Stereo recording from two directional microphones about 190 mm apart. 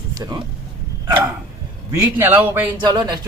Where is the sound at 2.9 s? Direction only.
20° right (ahead or behind).